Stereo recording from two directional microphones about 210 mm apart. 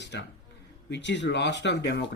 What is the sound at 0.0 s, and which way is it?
A man's voice, 55° left (ahead or behind).